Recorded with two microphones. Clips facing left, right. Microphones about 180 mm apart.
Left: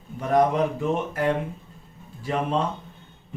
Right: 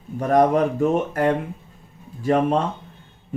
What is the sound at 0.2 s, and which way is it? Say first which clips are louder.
Speech: right 4 dB; 50° right (ahead or behind).